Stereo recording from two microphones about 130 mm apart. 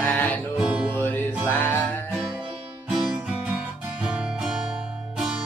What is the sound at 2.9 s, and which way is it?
Music, 5° right (ahead or behind).